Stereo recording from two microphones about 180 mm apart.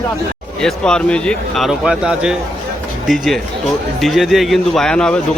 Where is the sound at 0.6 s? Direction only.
5° left (ahead or behind).